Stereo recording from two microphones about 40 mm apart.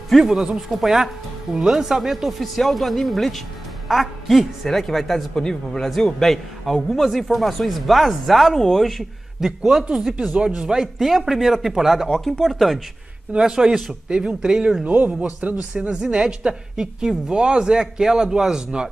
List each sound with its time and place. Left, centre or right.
0.3 s a man's voice: centre
0.7 s a woman's voice: centre
9.4 s a man's voice: centre
10.2 s speech: right
11.0 s a man's voice: centre
13.3 s a man's voice: centre